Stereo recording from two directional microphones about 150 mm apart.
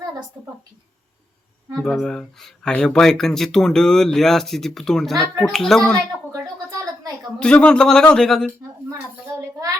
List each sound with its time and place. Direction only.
1.8 s speech: 5° left (ahead or behind)
6.3 s a sound: 25° right (ahead or behind)
7.3 s speech: 5° left (ahead or behind)